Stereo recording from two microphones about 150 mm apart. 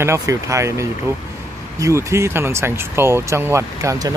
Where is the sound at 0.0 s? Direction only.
20° right (ahead or behind).